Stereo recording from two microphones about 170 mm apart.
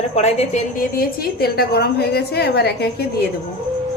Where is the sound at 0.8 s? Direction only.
60° left (ahead or behind).